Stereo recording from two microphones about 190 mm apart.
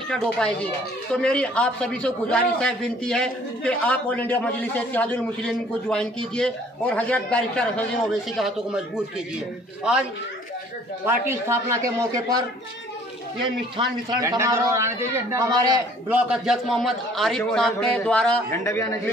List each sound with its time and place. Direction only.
0.1 s a man's voice: 5° left (ahead or behind)
11.1 s a man's voice: 15° right (ahead or behind)
16.2 s a man's voice: 5° right (ahead or behind); by 18.9 s 15° left (ahead or behind)